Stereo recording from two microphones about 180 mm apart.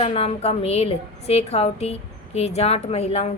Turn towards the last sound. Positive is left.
turn(degrees=35)  # may be behind; listen again after turning